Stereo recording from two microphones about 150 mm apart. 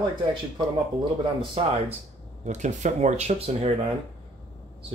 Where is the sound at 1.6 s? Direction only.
40° right (ahead or behind).